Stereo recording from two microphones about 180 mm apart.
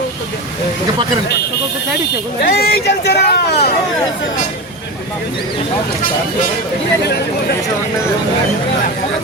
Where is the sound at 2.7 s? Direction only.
65° left (ahead or behind).